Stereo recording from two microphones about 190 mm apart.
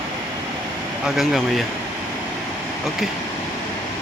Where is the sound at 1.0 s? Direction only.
Centre (ahead or behind).